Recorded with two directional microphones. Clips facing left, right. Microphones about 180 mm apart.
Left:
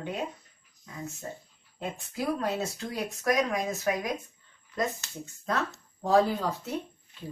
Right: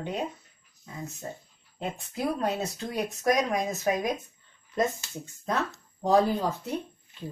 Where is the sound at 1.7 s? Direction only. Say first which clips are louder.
Right 1 dB; 20° right (ahead or behind).